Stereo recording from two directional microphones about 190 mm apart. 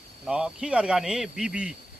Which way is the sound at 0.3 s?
5° right (ahead or behind).